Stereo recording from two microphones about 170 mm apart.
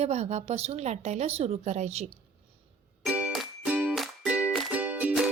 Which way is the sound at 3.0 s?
5° right (ahead or behind).